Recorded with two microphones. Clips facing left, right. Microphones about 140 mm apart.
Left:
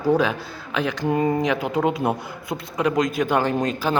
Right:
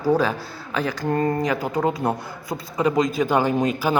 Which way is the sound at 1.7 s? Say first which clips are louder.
Left 1 dB; 10° left (ahead or behind).